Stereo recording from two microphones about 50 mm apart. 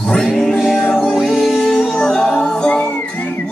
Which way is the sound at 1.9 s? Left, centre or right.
Centre.